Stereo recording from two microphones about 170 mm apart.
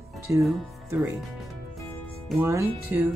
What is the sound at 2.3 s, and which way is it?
Speech, 15° right (ahead or behind).